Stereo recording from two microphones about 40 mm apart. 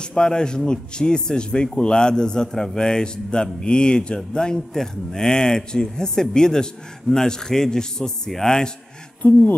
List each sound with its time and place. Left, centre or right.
0.0 s speech: centre